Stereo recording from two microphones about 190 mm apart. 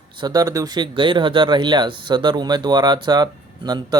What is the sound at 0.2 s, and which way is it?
Speech, 20° right (ahead or behind).